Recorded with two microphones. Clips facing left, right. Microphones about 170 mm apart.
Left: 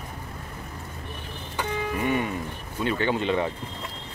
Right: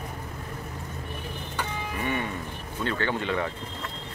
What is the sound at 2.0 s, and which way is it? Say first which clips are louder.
Speech: left 2 dB; 15° left (ahead or behind).